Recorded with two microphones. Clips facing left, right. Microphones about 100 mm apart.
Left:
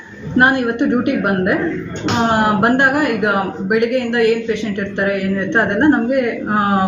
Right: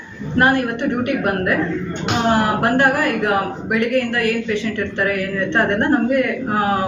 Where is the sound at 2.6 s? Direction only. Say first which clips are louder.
Left 2 dB; 20° left (ahead or behind).